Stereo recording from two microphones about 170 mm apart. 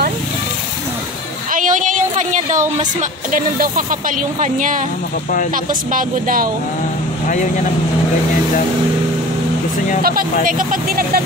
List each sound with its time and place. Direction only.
1.5 s a sound: 50° right (ahead or behind)
2.8 s speech: 50° right (ahead or behind)
10.0 s speech: 55° right (ahead or behind)